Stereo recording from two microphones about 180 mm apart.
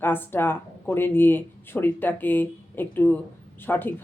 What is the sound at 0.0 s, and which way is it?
Speech, 10° left (ahead or behind).